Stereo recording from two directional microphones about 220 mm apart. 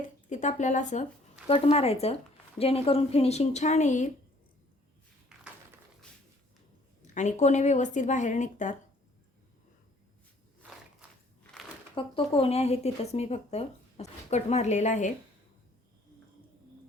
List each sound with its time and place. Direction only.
0.3 s speech: 35° left (ahead or behind)
7.0 s speech: 35° left (ahead or behind)
11.5 s crumpling: centre (ahead or behind)
11.9 s speech: 25° left (ahead or behind)